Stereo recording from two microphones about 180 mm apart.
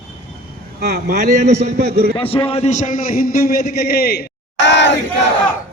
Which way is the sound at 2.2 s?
30° left (ahead or behind).